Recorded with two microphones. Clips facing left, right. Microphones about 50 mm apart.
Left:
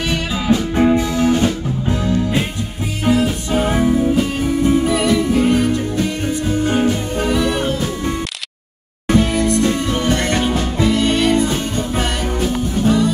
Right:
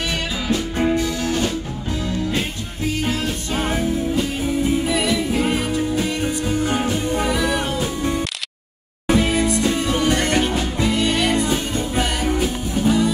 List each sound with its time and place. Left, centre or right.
0.5 s music: left
4.2 s music: centre
9.1 s music: centre
12.8 s music: centre